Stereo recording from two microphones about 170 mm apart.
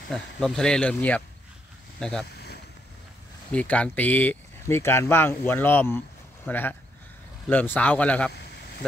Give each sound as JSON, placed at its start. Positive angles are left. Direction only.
{"t": 0.1, "sound": "speech", "side_deg": 5}
{"t": 2.3, "sound": "boat", "side_deg": 75}
{"t": 3.5, "sound": "speech", "side_deg": 10}
{"t": 8.3, "sound": "a sound", "side_deg": 75}